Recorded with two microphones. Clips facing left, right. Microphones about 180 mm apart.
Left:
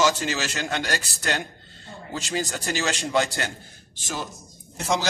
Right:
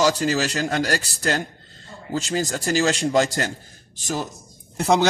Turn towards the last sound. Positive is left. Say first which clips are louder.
# right 6 dB
turn(degrees=-60)  # may be behind; listen again after turning